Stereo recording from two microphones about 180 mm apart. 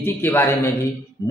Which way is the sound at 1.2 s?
20° left (ahead or behind).